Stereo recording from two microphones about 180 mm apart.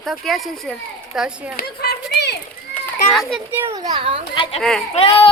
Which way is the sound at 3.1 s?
Centre (ahead or behind).